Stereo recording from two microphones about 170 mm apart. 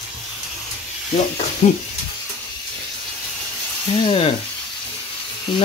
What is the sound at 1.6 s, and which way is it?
Speech, 45° left (ahead or behind).